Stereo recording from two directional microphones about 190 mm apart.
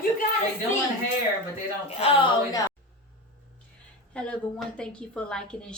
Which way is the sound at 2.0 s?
30° left (ahead or behind).